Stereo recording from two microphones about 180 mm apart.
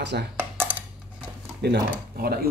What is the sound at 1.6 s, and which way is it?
Speech, 60° right (ahead or behind).